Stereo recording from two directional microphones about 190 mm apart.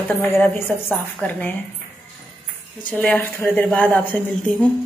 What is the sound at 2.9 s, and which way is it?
A woman's voice, 10° left (ahead or behind).